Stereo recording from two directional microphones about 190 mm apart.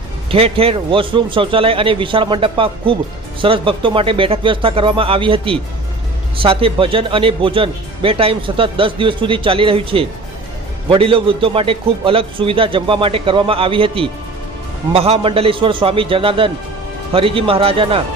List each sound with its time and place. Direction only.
0.3 s speech: 30° right (ahead or behind)